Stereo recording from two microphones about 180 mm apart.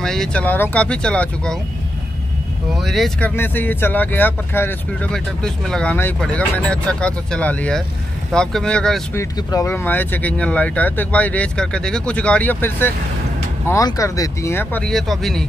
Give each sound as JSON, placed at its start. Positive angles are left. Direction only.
{"t": 0.0, "sound": "speech", "side_deg": 5}
{"t": 2.7, "sound": "speech", "side_deg": 0}
{"t": 9.1, "sound": "speech", "side_deg": 15}